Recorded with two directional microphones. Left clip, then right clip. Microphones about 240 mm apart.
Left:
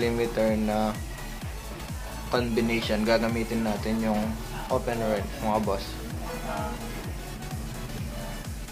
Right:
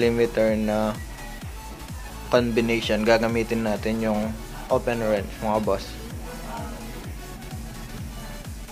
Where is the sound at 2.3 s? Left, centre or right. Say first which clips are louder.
Right 6 dB; right.